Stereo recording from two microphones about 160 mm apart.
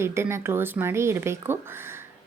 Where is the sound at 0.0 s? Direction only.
15° right (ahead or behind).